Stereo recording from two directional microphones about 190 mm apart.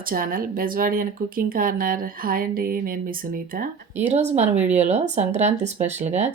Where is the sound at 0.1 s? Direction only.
50° right (ahead or behind).